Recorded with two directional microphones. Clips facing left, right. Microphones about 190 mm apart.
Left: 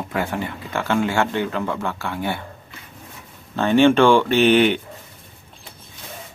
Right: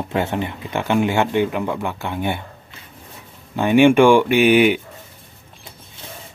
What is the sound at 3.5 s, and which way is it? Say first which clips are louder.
Speech: right 2 dB; 15° right (ahead or behind).